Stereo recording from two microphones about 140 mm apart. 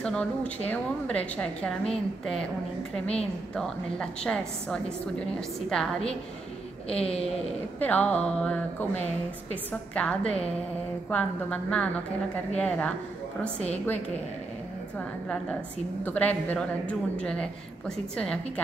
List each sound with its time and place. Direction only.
0.0 s a woman's voice: 10° left (ahead or behind)
6.9 s a woman's voice: 45° left (ahead or behind)
7.8 s a woman's voice: 10° left (ahead or behind)
16.0 s a woman's voice: 10° left (ahead or behind)